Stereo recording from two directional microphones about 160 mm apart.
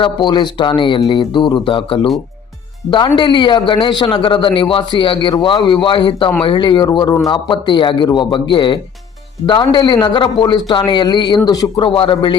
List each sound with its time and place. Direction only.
0.0 s a man's voice: 30° left (ahead or behind)